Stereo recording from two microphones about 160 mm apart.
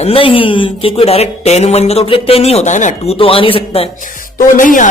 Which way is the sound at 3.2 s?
35° left (ahead or behind).